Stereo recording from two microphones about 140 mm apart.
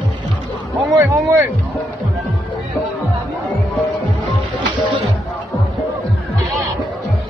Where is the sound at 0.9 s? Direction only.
20° right (ahead or behind).